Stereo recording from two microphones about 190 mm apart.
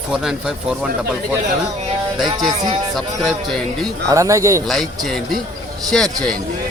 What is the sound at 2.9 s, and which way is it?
Speech, centre (ahead or behind).